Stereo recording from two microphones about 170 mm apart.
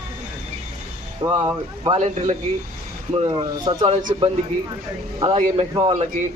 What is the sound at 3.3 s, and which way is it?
Speech, 20° right (ahead or behind).